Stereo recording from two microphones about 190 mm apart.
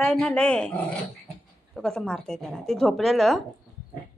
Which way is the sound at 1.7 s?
5° left (ahead or behind).